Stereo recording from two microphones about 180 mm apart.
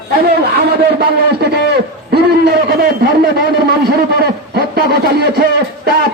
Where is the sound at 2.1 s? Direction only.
60° right (ahead or behind).